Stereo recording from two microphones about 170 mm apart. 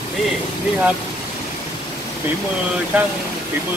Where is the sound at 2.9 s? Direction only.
10° right (ahead or behind).